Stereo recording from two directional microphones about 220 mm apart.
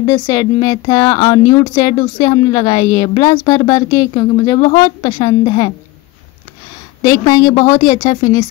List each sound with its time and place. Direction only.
0.0 s speech: 20° left (ahead or behind)
7.0 s speech: 20° left (ahead or behind)